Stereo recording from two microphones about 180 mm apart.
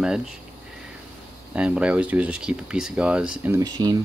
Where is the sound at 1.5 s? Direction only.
5° right (ahead or behind).